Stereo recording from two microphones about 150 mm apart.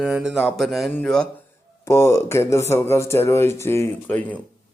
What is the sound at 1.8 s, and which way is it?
Speech, 15° left (ahead or behind).